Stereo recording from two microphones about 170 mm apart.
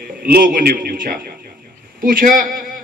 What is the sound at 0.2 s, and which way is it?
A man's voice, 60° right (ahead or behind).